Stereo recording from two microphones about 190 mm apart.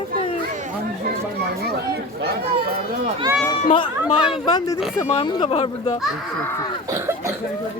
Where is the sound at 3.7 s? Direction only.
25° left (ahead or behind).